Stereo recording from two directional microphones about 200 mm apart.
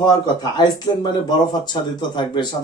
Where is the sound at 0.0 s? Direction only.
20° left (ahead or behind).